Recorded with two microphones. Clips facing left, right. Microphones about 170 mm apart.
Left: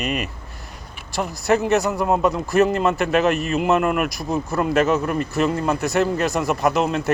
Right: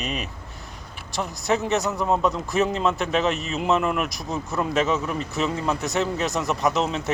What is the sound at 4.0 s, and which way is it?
Speech, 60° left (ahead or behind).